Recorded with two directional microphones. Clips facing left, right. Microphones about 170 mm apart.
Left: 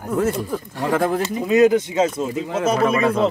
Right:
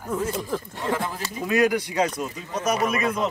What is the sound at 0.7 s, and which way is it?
Speech, 55° left (ahead or behind).